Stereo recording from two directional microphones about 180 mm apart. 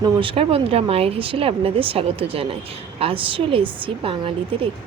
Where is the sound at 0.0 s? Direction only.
30° right (ahead or behind).